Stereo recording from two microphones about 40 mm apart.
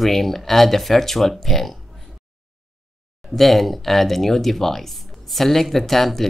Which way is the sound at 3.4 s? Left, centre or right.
Centre.